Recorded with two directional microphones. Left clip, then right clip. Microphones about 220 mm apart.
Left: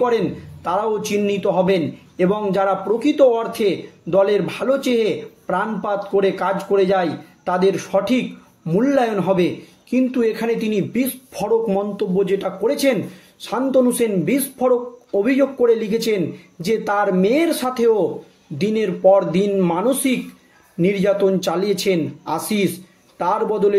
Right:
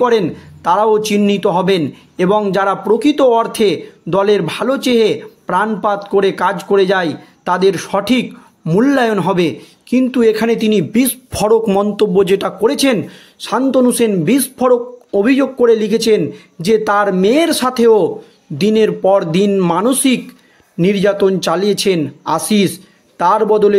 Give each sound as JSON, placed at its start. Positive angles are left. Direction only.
{"t": 0.7, "sound": "a man's voice", "side_deg": -45}